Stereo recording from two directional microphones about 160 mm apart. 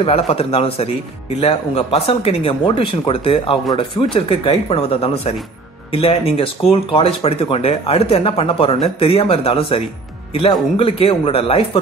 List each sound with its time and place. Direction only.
0.0 s speech: 35° left (ahead or behind)